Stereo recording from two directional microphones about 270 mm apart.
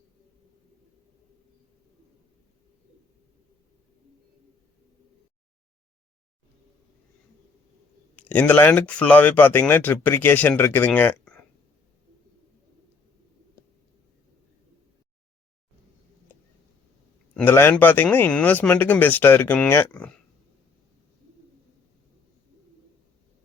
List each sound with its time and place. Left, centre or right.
8.1 s speech: centre
17.3 s speech: centre